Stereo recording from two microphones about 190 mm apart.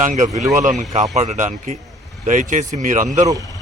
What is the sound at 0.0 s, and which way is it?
Speech, 40° right (ahead or behind).